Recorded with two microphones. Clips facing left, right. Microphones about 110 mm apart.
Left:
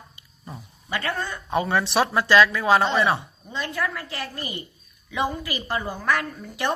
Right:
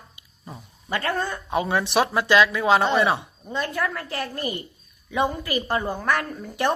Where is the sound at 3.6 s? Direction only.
40° right (ahead or behind).